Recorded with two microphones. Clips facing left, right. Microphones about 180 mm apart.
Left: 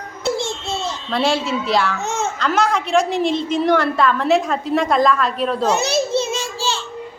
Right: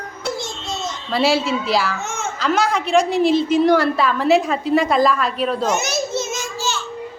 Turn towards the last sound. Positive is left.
turn(degrees=30)  # may be behind; listen again after turning